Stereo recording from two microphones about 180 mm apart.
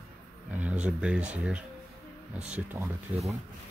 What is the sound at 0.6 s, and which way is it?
Speech, 5° right (ahead or behind).